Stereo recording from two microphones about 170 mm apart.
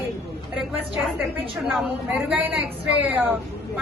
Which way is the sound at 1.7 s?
5° right (ahead or behind).